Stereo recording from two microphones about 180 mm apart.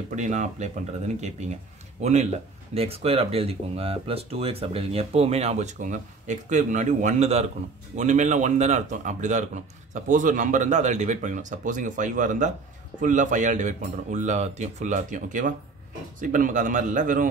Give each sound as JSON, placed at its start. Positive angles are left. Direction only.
{"t": 0.1, "sound": "speech", "side_deg": -40}